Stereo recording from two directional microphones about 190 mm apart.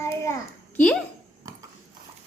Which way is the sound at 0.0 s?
15° left (ahead or behind).